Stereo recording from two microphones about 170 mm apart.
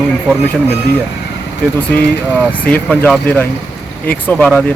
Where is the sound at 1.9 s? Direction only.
10° left (ahead or behind).